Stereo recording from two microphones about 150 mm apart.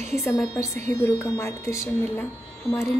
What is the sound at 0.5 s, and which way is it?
A woman's voice, 20° left (ahead or behind).